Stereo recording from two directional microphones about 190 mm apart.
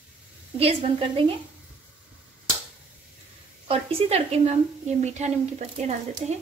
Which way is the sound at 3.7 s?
30° right (ahead or behind).